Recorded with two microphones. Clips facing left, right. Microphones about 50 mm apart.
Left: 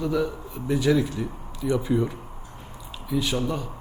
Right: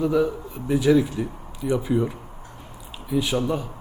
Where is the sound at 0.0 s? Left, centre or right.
Centre.